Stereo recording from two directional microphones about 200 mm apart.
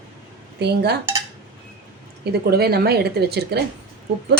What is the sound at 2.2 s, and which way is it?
Speech, 50° right (ahead or behind).